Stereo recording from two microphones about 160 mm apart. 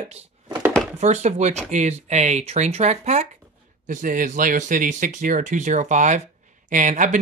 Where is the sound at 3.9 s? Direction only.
55° right (ahead or behind).